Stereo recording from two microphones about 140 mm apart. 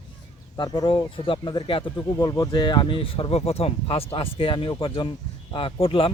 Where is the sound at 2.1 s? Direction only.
25° left (ahead or behind); by 6.1 s 40° left (ahead or behind).